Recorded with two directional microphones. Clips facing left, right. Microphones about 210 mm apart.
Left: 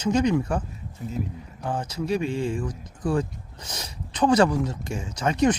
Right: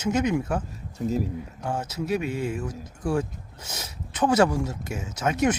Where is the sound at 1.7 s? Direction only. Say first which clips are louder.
Left 1 dB; 5° right (ahead or behind).